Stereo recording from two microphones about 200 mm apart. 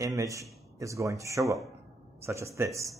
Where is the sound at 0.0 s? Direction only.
15° right (ahead or behind).